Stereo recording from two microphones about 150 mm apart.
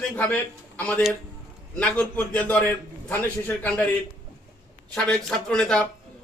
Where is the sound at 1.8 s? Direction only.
10° left (ahead or behind).